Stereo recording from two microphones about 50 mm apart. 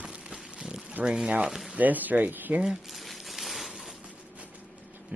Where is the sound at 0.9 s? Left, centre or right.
Right.